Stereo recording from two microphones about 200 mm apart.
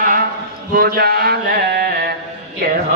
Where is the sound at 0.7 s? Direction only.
45° right (ahead or behind).